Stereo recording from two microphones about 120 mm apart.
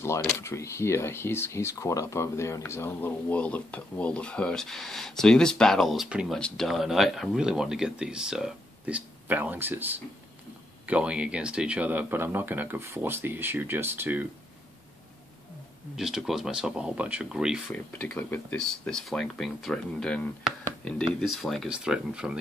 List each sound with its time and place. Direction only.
0.4 s speech: 25° left (ahead or behind); by 6.3 s 10° right (ahead or behind)
6.3 s speech: 5° left (ahead or behind); by 14.2 s 15° right (ahead or behind)
16.0 s speech: 5° right (ahead or behind)
17.7 s speech: 10° left (ahead or behind)
20.5 s a sound: 5° right (ahead or behind)
20.8 s speech: centre (ahead or behind)